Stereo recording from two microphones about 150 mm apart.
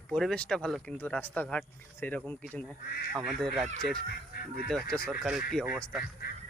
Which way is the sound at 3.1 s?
Centre (ahead or behind).